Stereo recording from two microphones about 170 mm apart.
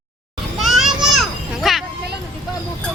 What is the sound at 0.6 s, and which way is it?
Children playing, centre (ahead or behind).